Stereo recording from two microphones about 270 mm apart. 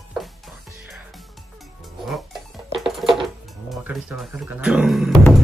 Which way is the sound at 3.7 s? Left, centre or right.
Centre.